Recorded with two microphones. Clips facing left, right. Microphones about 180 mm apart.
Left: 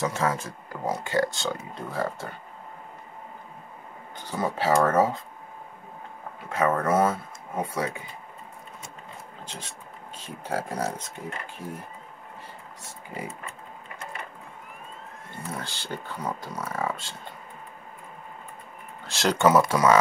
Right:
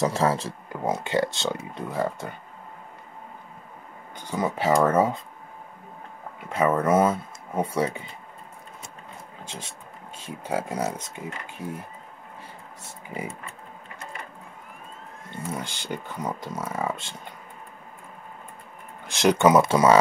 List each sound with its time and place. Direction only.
0.0 s speech: 35° right (ahead or behind); by 2.2 s 20° right (ahead or behind)
4.3 s speech: 15° right (ahead or behind)
6.5 s speech: 20° right (ahead or behind)
10.2 s speech: 15° right (ahead or behind)
15.3 s speech: 20° right (ahead or behind)
19.0 s speech: 20° right (ahead or behind)